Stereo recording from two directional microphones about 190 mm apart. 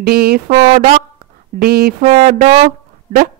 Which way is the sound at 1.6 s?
55° right (ahead or behind).